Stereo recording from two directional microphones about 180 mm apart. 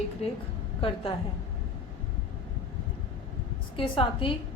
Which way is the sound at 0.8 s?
30° left (ahead or behind).